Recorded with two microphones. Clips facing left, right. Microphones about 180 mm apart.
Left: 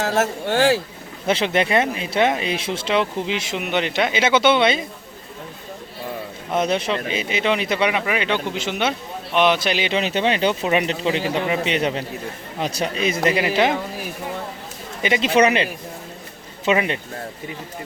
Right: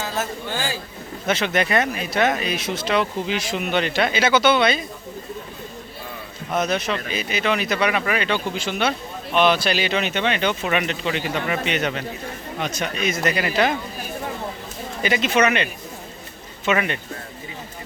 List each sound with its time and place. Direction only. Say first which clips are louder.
0.0 s speech: left 6 dB; 80° left
1.3 s speech: left 2 dB; 30° left (ahead or behind)
6.5 s speech: left 2 dB; 25° left (ahead or behind)
15.0 s speech: left 3 dB; 25° left (ahead or behind)